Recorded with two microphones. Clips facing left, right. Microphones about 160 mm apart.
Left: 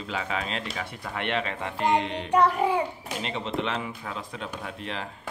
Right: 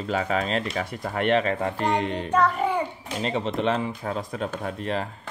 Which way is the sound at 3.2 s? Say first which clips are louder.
Right 5 dB; 40° right (ahead or behind).